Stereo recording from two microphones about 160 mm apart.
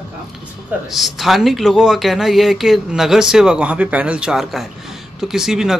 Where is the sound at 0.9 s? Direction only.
Centre (ahead or behind).